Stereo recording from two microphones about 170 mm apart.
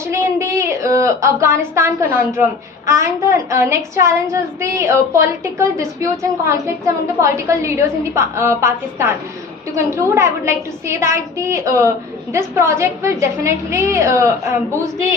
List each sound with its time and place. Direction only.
0.1 s a woman's voice: 15° right (ahead or behind)